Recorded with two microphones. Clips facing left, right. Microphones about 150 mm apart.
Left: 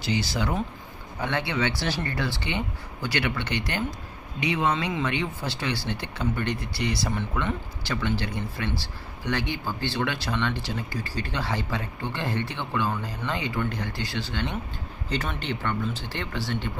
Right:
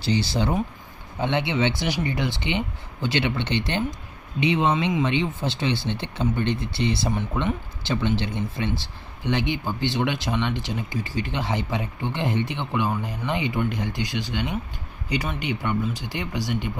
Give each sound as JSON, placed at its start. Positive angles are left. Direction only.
{"t": 0.0, "sound": "speech", "side_deg": -30}